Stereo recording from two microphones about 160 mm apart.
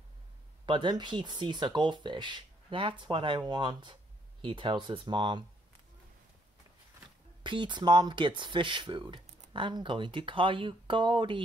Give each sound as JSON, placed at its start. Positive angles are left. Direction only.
{"t": 0.7, "sound": "speech", "side_deg": -30}
{"t": 7.4, "sound": "speech", "side_deg": -30}